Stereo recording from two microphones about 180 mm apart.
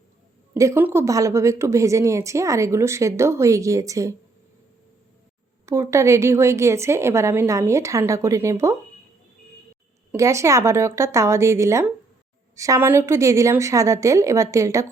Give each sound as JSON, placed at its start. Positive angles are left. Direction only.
{"t": 0.5, "sound": "a woman's voice", "side_deg": -15}
{"t": 5.6, "sound": "a woman's voice", "side_deg": -15}
{"t": 10.1, "sound": "a woman's voice", "side_deg": -15}